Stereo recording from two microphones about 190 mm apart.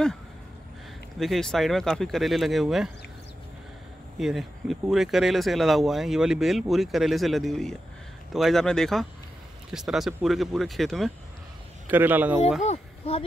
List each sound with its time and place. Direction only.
1.2 s speech: centre (ahead or behind)
4.2 s speech: centre (ahead or behind)
11.9 s speech: 10° right (ahead or behind)
12.6 s speech: 35° left (ahead or behind)